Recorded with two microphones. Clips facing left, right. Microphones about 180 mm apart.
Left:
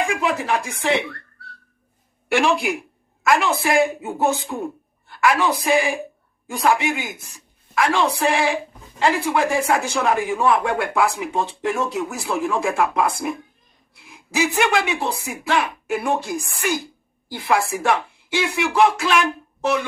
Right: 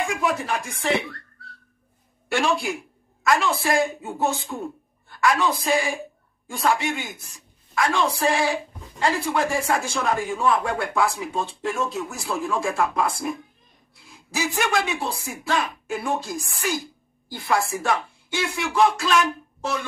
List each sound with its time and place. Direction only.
0.0 s speech: 75° left (ahead or behind)
2.3 s a man's voice: 70° left (ahead or behind)
14.1 s a woman's voice: 80° left